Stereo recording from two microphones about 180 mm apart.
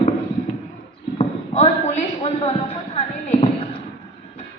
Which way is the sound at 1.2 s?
40° left (ahead or behind).